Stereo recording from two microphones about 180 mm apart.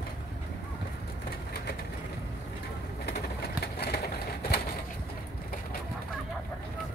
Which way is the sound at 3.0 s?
60° left (ahead or behind).